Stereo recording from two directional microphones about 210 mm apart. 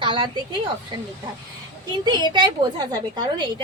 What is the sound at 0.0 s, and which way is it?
Speech, 25° right (ahead or behind).